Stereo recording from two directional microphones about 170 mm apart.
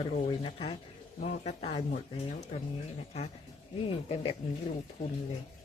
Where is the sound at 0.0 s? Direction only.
30° left (ahead or behind).